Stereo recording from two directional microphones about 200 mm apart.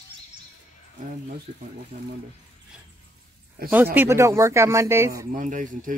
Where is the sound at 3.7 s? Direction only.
10° right (ahead or behind).